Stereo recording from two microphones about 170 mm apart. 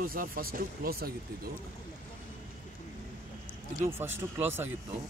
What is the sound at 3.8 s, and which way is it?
Speech, 15° right (ahead or behind).